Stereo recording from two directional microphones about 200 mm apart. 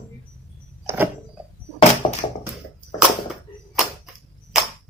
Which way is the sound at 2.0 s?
25° left (ahead or behind).